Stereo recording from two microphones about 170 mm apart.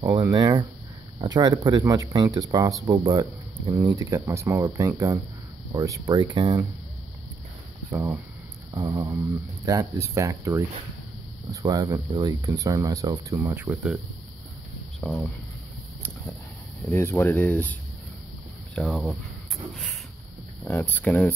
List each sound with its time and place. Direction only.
0.2 s speech: 20° right (ahead or behind)
7.9 s speech: 15° right (ahead or behind)
15.0 s speech: 5° left (ahead or behind)
16.9 s speech: 15° left (ahead or behind)
18.8 s speech: centre (ahead or behind)
19.7 s a sound: 5° left (ahead or behind)
20.6 s speech: 10° left (ahead or behind)